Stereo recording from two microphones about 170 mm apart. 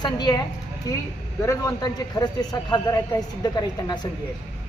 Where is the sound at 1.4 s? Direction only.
15° left (ahead or behind).